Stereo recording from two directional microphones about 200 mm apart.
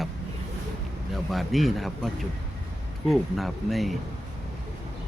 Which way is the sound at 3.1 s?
Centre (ahead or behind).